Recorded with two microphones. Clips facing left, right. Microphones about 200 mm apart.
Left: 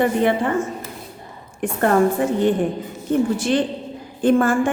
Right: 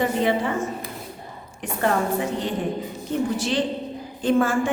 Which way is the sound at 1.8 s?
50° left (ahead or behind).